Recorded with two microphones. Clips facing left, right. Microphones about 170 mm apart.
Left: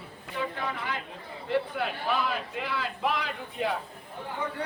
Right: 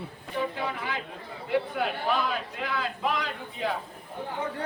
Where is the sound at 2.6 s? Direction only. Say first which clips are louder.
Right 1 dB; centre (ahead or behind).